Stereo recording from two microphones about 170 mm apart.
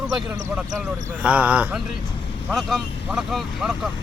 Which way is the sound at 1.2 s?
10° right (ahead or behind).